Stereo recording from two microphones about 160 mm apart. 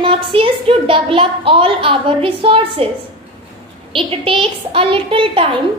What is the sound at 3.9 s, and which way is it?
A woman's voice, 35° right (ahead or behind).